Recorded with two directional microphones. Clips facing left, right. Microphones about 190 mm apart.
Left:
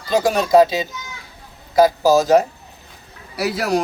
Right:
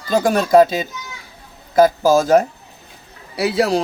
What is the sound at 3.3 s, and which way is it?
Speech, 25° right (ahead or behind).